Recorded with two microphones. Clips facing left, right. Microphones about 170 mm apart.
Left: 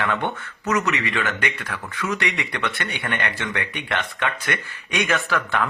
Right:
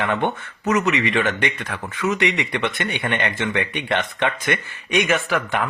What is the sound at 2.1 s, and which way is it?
Speech, 15° right (ahead or behind).